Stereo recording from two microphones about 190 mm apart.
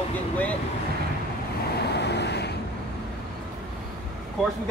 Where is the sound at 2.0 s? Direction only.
60° left (ahead or behind).